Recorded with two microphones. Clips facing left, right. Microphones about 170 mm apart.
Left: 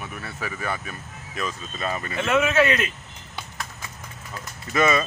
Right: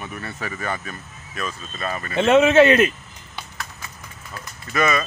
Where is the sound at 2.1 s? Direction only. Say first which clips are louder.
Right 8 dB; 25° right (ahead or behind).